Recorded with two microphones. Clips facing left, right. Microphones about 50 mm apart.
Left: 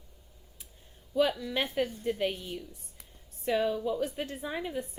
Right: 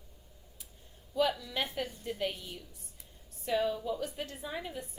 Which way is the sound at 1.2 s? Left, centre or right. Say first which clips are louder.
Left 3 dB; left.